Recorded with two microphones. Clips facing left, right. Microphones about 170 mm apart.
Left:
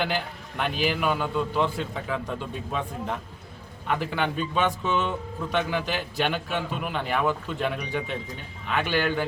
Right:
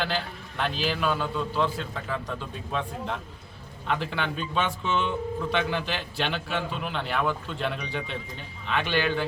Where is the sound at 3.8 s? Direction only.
10° left (ahead or behind).